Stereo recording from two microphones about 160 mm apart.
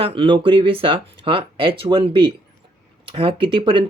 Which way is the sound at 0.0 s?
35° right (ahead or behind).